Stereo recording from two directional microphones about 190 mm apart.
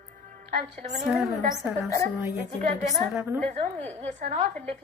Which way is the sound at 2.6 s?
35° right (ahead or behind).